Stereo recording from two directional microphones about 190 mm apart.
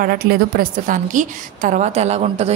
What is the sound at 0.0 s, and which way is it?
A woman's voice, 50° right (ahead or behind).